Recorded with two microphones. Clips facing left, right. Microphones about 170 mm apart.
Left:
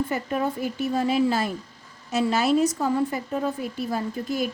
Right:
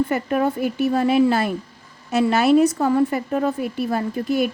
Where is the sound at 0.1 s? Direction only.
65° right (ahead or behind).